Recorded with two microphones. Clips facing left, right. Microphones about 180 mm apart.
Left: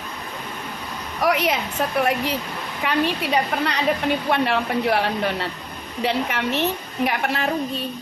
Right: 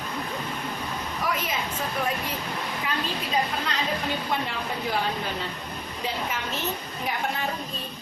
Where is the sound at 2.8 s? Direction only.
70° left (ahead or behind).